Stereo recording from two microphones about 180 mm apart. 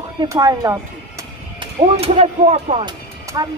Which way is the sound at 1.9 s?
35° right (ahead or behind).